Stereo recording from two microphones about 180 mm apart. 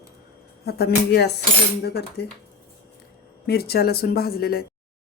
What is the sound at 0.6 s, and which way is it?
Speech, 60° left (ahead or behind).